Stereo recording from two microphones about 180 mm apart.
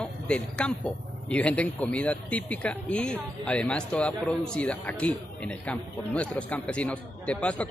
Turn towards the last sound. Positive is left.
turn(degrees=5)  # may be behind; listen again after turning